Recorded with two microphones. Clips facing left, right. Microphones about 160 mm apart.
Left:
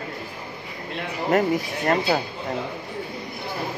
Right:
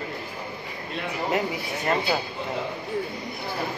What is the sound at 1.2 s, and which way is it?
Speech, 45° left (ahead or behind).